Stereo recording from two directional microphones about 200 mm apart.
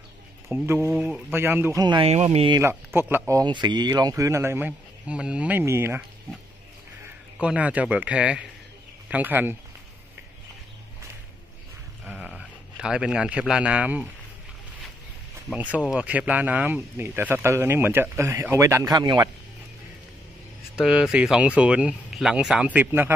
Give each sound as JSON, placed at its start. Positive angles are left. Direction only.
{"t": 0.5, "sound": "speech", "side_deg": -10}
{"t": 2.6, "sound": "speech", "side_deg": -10}
{"t": 7.3, "sound": "speech", "side_deg": -5}
{"t": 12.0, "sound": "a sound", "side_deg": -5}
{"t": 15.5, "sound": "speech", "side_deg": -5}
{"t": 20.7, "sound": "speech", "side_deg": -5}